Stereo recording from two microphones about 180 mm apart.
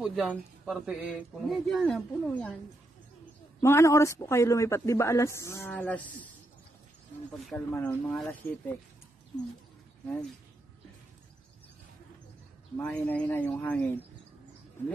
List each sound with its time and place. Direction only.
0.0 s speech: 5° right (ahead or behind)
3.6 s speech: 15° left (ahead or behind)
7.7 s speech: 5° left (ahead or behind)
12.7 s speech: 10° left (ahead or behind)